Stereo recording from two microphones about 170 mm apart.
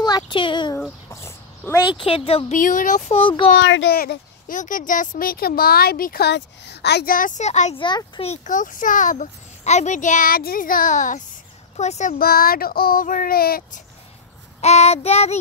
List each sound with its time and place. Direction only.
0.0 s a sound: 25° left (ahead or behind)
1.2 s a sound: 15° left (ahead or behind)
1.9 s child singing: 30° left (ahead or behind)
2.5 s a child's voice: 50° left (ahead or behind)
3.2 s child singing: 30° left (ahead or behind)
3.6 s speech: 90° left; by 7.7 s 45° left (ahead or behind)
7.7 s speech: 30° left (ahead or behind)
8.3 s a child's voice: 50° left (ahead or behind)
11.7 s child singing: 40° left (ahead or behind)
12.2 s speech: 60° left (ahead or behind)
14.6 s child singing: 40° left (ahead or behind)